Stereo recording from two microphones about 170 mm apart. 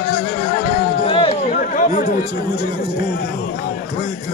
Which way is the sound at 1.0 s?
35° left (ahead or behind).